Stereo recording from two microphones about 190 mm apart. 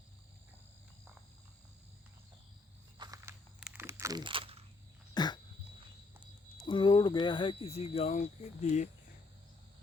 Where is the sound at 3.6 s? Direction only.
10° right (ahead or behind); by 4.6 s 30° right (ahead or behind).